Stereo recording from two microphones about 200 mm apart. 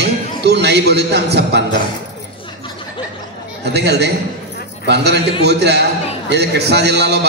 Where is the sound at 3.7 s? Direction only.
55° right (ahead or behind).